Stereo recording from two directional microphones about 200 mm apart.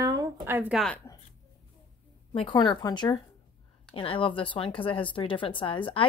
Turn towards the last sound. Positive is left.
turn(degrees=25)  # may be behind; listen again after turning